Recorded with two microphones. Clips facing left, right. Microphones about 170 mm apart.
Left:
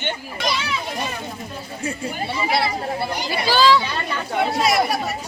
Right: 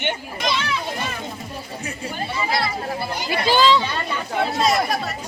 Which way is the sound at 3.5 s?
15° right (ahead or behind).